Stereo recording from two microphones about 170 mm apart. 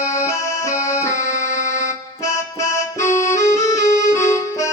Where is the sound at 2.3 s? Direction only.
20° left (ahead or behind).